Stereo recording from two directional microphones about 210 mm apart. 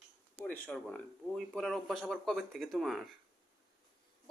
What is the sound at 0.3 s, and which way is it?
Speech, 5° left (ahead or behind).